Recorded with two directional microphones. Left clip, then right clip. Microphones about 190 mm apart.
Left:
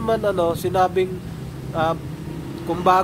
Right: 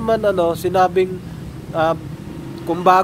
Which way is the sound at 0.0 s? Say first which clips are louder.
Right 3 dB; 25° right (ahead or behind).